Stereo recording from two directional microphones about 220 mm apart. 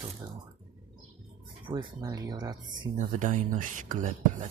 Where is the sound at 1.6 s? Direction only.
20° right (ahead or behind).